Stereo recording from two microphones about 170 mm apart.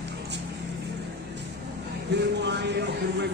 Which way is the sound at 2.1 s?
85° right.